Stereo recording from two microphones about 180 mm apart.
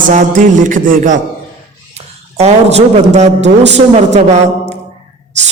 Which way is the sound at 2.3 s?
35° right (ahead or behind).